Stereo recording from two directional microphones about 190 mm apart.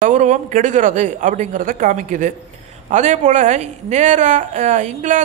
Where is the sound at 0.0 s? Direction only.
40° right (ahead or behind).